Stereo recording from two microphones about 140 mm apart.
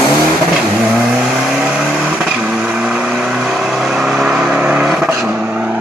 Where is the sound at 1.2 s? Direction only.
5° right (ahead or behind).